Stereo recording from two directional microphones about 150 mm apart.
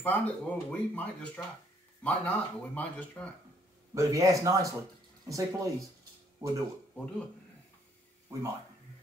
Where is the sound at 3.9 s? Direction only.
20° right (ahead or behind).